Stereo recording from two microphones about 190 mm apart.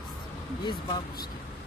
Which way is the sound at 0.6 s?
25° left (ahead or behind).